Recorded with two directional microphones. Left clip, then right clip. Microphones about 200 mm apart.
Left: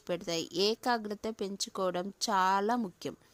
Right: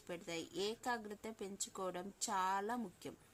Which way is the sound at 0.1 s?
45° left (ahead or behind).